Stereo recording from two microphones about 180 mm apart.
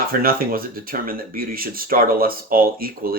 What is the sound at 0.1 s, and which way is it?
Speech, 55° right (ahead or behind).